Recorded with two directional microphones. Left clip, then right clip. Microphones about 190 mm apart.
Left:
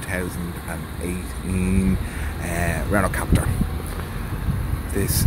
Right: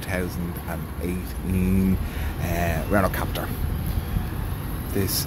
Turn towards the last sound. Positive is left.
turn(degrees=0)  # may be behind; listen again after turning